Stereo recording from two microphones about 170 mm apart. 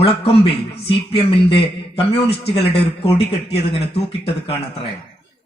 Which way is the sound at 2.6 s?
35° left (ahead or behind).